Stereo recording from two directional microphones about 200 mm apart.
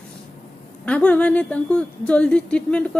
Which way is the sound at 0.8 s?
5° left (ahead or behind).